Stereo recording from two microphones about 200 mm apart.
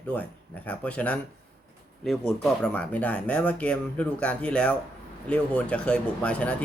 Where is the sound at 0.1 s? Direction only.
5° left (ahead or behind).